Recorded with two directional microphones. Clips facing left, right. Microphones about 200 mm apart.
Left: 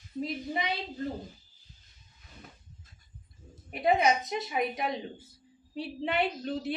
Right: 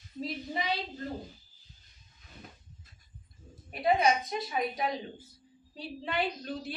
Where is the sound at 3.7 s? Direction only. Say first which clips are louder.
Left 1 dB; 25° left (ahead or behind).